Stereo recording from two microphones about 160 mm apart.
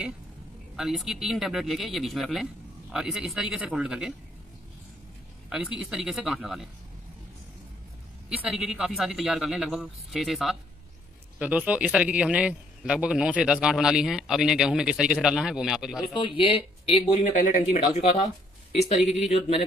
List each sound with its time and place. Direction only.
0.7 s speech: centre (ahead or behind)
5.5 s speech: 5° right (ahead or behind)
8.5 s speech: 5° right (ahead or behind)
16.1 s speech: 30° left (ahead or behind)